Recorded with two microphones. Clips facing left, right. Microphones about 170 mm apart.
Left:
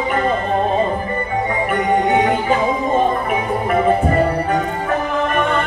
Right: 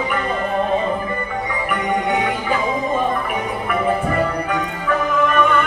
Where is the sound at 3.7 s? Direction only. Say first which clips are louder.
Left 4 dB; 40° left (ahead or behind).